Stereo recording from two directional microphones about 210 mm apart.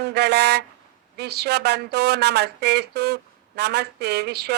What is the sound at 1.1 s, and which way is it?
Speech, 50° right (ahead or behind).